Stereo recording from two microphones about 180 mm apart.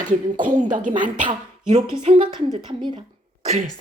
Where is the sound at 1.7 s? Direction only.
30° right (ahead or behind).